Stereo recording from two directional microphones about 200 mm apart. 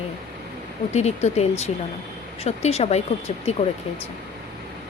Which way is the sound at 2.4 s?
30° left (ahead or behind).